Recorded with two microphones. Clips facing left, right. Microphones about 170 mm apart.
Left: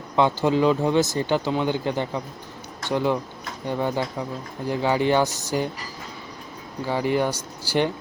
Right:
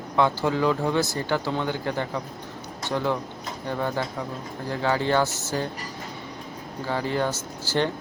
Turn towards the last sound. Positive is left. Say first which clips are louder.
# left 2 dB
turn(degrees=15)  # may be behind; listen again after turning